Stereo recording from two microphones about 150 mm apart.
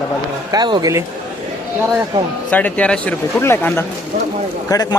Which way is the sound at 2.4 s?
10° left (ahead or behind).